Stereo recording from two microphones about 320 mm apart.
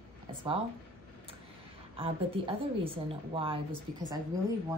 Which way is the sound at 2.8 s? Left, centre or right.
Centre.